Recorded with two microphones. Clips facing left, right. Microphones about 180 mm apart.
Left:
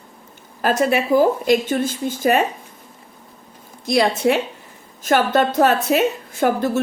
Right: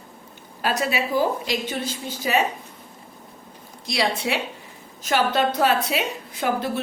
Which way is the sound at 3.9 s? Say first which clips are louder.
Left 7 dB; 50° left (ahead or behind).